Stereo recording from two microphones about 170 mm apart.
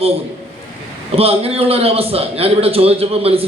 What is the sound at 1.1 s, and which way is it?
A man's voice, 35° right (ahead or behind).